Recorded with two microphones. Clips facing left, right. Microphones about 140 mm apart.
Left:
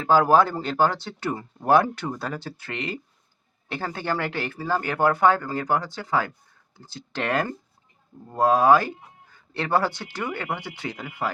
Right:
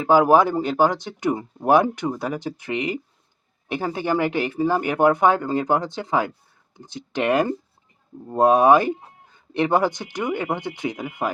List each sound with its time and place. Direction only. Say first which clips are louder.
0.0 s speech: right 3 dB; 15° right (ahead or behind)